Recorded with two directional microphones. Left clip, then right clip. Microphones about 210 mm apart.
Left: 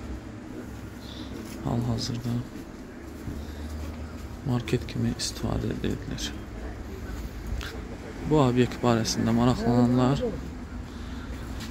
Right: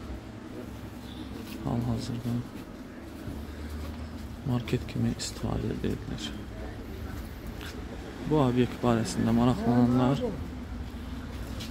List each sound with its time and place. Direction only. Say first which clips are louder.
1.7 s speech: left 2 dB; 5° left (ahead or behind)
4.5 s speech: left 3 dB; 5° left (ahead or behind)
8.3 s speech: left 3 dB; 5° left (ahead or behind)